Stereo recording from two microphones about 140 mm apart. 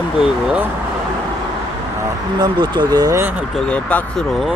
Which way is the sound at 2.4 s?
30° right (ahead or behind).